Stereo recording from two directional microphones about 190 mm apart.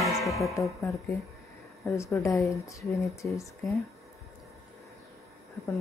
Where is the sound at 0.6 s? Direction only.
15° left (ahead or behind).